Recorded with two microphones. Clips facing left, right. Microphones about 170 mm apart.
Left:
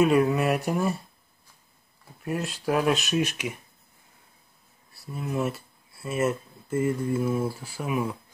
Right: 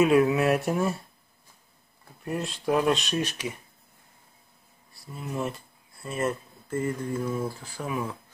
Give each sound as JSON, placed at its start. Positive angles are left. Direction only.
{"t": 0.0, "sound": "speech", "side_deg": 0}
{"t": 2.2, "sound": "speech", "side_deg": 0}
{"t": 4.9, "sound": "speech", "side_deg": 0}